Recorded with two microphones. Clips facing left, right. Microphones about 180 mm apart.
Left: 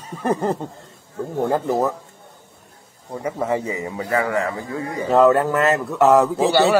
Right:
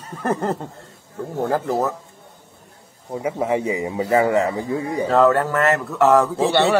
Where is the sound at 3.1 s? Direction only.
10° right (ahead or behind).